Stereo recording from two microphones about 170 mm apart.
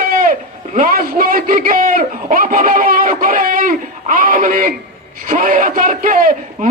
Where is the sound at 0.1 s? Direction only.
55° right (ahead or behind).